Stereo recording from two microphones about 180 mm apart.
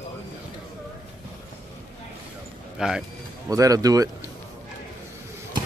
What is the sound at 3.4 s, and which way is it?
Speech, 20° right (ahead or behind).